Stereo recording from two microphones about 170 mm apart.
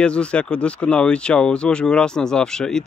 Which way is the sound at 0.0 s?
5° left (ahead or behind).